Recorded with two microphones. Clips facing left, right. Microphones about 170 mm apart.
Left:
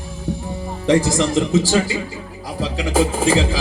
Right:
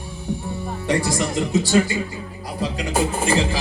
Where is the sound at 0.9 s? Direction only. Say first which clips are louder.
Left 6 dB; 90° left.